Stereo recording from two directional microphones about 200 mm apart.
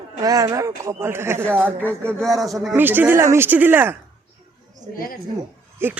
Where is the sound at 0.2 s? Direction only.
20° right (ahead or behind).